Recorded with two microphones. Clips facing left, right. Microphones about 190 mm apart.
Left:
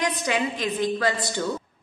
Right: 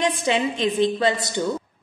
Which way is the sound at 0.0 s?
25° right (ahead or behind).